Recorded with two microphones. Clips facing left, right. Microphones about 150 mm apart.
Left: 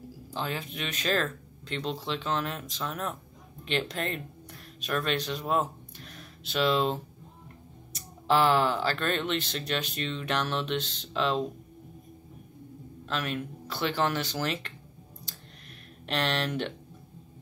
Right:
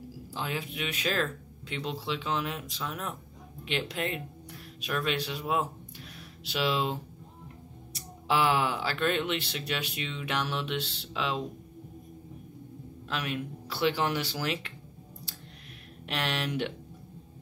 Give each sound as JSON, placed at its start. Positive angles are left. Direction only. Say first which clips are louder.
{"t": 0.3, "sound": "speech", "louder": "left 1 dB", "side_deg": -10}
{"t": 6.1, "sound": "a sound", "louder": "left 3 dB", "side_deg": -10}
{"t": 8.3, "sound": "speech", "louder": "left 3 dB", "side_deg": -10}
{"t": 13.1, "sound": "speech", "louder": "left 1 dB", "side_deg": -10}
{"t": 16.1, "sound": "speech", "louder": "left 3 dB", "side_deg": -10}